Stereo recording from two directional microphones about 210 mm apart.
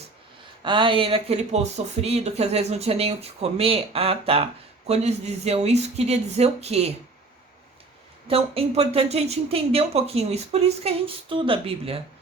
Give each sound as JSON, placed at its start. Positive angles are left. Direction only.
{"t": 0.6, "sound": "speech", "side_deg": -25}
{"t": 8.3, "sound": "speech", "side_deg": -30}